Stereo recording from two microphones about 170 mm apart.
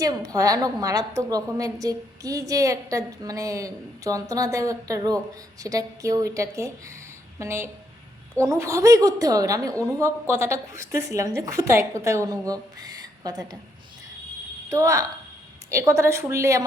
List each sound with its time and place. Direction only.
0.0 s a woman's voice: 20° right (ahead or behind)
14.7 s a woman's voice: 20° right (ahead or behind)